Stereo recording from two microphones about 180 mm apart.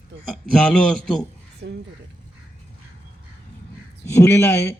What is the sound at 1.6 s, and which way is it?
Speech, 60° right (ahead or behind).